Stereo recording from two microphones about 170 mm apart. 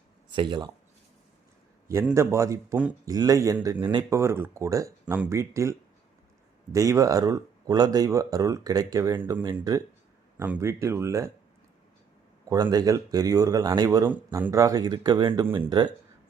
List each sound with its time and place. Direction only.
0.3 s speech: 25° right (ahead or behind)
2.1 s speech: 15° right (ahead or behind)
6.7 s speech: 20° right (ahead or behind)
12.5 s speech: 20° right (ahead or behind)